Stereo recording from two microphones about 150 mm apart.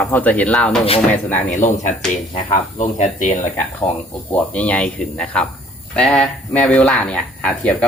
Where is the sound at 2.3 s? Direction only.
50° left (ahead or behind).